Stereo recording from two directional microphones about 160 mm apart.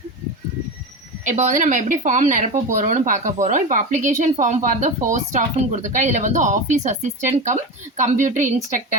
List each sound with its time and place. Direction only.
1.2 s speech: 50° right (ahead or behind)